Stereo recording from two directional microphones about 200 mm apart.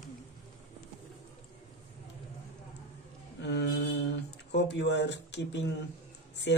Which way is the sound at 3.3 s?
60° left (ahead or behind).